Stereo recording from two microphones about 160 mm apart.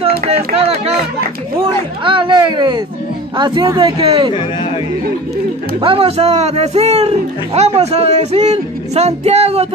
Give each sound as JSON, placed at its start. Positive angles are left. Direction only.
{"t": 0.6, "sound": "speech", "side_deg": -40}
{"t": 2.0, "sound": "a child's voice", "side_deg": -30}
{"t": 5.8, "sound": "speech", "side_deg": -35}